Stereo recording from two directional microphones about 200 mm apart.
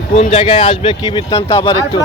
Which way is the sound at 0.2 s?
30° left (ahead or behind).